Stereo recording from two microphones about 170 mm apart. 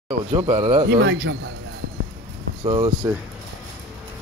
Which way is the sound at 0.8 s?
85° right.